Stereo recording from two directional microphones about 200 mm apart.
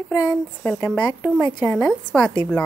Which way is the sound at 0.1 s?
20° left (ahead or behind).